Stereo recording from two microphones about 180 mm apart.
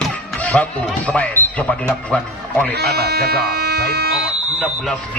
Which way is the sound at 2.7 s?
60° right (ahead or behind).